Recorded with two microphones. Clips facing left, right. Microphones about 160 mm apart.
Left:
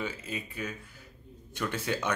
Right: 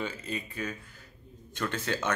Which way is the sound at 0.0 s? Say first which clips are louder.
Right 1 dB; 5° left (ahead or behind).